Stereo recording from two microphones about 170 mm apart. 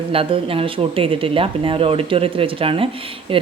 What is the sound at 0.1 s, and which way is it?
Speech, 35° right (ahead or behind).